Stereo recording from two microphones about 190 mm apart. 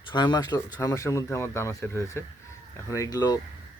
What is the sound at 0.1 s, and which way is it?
Speech, 25° left (ahead or behind).